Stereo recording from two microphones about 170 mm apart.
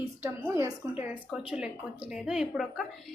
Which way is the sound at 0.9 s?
10° right (ahead or behind).